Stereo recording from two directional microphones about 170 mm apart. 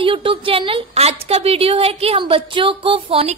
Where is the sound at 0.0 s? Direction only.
30° right (ahead or behind).